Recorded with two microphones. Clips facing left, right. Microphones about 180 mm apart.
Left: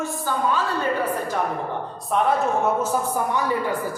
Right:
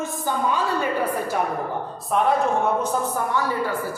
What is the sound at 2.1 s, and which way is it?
Speech, centre (ahead or behind).